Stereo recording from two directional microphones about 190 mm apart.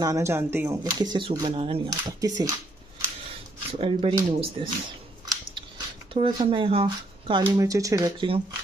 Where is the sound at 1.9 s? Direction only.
20° right (ahead or behind).